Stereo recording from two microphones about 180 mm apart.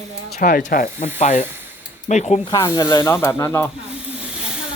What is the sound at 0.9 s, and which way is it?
Snake, 40° left (ahead or behind).